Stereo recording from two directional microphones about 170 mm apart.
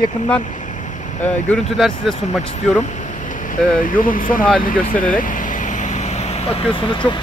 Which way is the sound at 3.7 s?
55° left (ahead or behind).